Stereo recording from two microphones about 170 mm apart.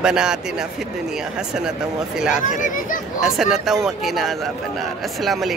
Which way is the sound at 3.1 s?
Centre (ahead or behind).